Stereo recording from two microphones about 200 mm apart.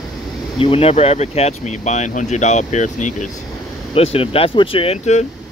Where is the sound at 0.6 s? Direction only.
30° left (ahead or behind).